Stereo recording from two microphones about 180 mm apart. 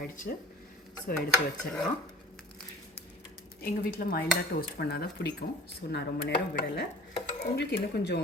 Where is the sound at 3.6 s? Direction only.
55° left (ahead or behind).